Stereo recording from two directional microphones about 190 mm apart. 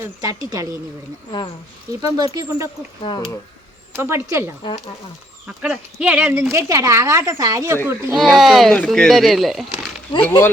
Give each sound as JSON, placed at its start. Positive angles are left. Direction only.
{"t": 0.0, "sound": "speech", "side_deg": -15}
{"t": 1.9, "sound": "speech", "side_deg": -20}
{"t": 3.0, "sound": "speech", "side_deg": 25}
{"t": 3.9, "sound": "speech", "side_deg": -10}
{"t": 5.6, "sound": "speech", "side_deg": -5}
{"t": 8.2, "sound": "speech", "side_deg": 0}
{"t": 10.2, "sound": "speech", "side_deg": 10}